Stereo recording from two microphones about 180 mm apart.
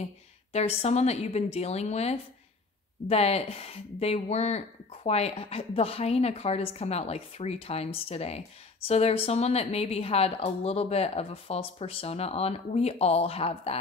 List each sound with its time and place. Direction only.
0.5 s speech: 35° left (ahead or behind)